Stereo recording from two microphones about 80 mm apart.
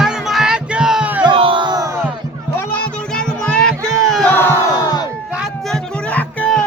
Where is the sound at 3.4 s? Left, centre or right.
Centre.